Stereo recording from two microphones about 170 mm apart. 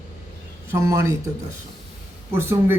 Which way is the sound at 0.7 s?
15° right (ahead or behind).